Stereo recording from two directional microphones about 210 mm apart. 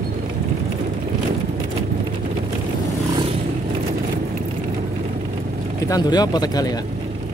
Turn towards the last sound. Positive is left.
turn(degrees=20)  # may be behind; listen again after turning